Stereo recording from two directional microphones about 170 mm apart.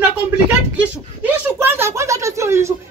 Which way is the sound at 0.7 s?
10° right (ahead or behind).